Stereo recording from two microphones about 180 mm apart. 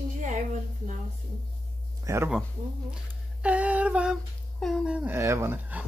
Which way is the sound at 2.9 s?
5° right (ahead or behind).